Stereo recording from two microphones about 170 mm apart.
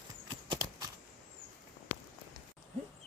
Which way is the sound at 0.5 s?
20° right (ahead or behind).